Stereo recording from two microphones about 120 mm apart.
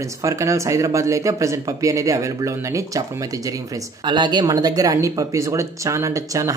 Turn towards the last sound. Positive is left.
turn(degrees=-30)  # may be behind; listen again after turning